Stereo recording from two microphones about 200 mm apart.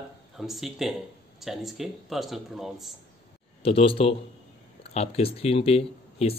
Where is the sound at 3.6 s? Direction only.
30° left (ahead or behind).